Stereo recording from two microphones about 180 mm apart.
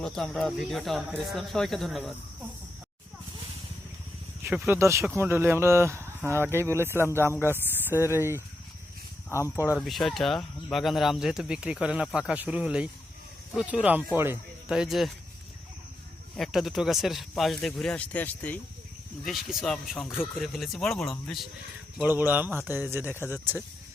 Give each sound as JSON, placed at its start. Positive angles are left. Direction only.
{"t": 0.0, "sound": "speech", "side_deg": 5}
{"t": 4.6, "sound": "speech", "side_deg": -15}
{"t": 9.3, "sound": "speech", "side_deg": 15}
{"t": 9.7, "sound": "speech", "side_deg": 0}
{"t": 16.3, "sound": "speech", "side_deg": 0}
{"t": 19.2, "sound": "speech", "side_deg": 0}
{"t": 22.0, "sound": "speech", "side_deg": -10}